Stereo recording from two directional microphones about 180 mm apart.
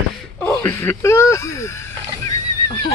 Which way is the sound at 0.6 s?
15° left (ahead or behind).